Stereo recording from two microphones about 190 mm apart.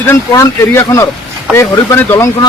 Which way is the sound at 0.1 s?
15° left (ahead or behind).